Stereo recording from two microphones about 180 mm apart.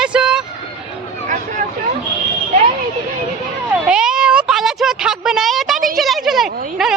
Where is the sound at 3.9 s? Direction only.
5° right (ahead or behind).